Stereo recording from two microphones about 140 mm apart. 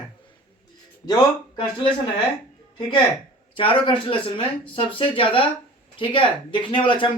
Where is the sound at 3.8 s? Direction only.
40° left (ahead or behind).